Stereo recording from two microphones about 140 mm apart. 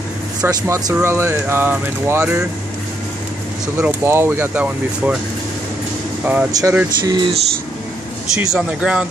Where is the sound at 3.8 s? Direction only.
15° right (ahead or behind).